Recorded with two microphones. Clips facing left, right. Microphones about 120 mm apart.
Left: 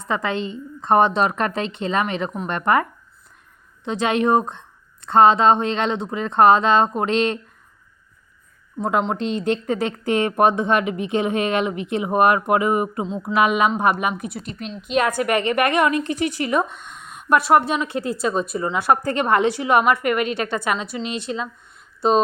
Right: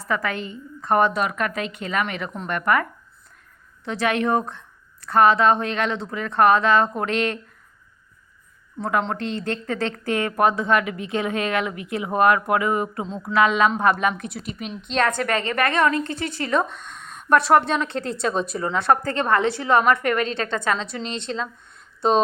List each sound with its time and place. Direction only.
0.0 s speech: 20° left (ahead or behind)
3.8 s speech: 20° left (ahead or behind)
8.8 s a woman's voice: 20° left (ahead or behind); by 22.2 s 5° left (ahead or behind)